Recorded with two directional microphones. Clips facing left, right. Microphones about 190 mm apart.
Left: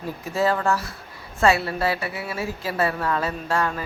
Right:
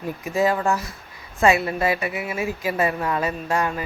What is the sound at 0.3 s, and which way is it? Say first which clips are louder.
A woman's voice: right 1 dB; 15° right (ahead or behind).